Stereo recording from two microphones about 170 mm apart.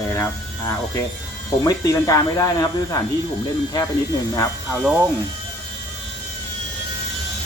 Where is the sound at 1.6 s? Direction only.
20° left (ahead or behind).